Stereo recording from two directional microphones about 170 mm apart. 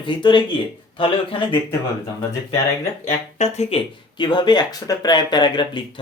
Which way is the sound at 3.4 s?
40° left (ahead or behind).